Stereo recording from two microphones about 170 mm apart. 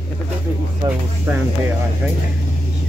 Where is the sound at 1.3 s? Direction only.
10° right (ahead or behind).